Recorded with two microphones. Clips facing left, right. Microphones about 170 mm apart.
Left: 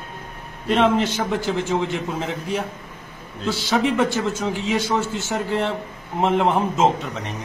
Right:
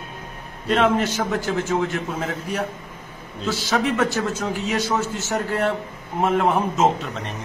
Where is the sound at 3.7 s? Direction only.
5° left (ahead or behind).